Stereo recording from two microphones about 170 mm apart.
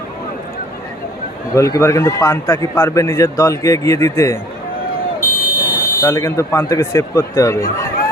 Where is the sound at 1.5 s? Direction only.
20° left (ahead or behind).